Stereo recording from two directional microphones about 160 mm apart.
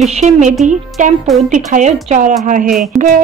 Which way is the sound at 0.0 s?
45° right (ahead or behind).